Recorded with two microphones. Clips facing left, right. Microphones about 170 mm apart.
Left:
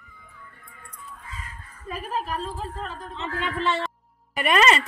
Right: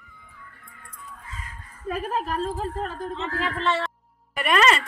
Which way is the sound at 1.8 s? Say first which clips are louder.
Right 3 dB; 50° right (ahead or behind).